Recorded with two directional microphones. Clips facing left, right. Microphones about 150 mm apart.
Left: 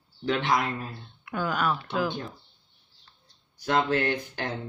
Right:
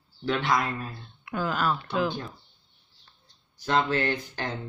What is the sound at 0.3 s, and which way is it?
Speech, 20° left (ahead or behind).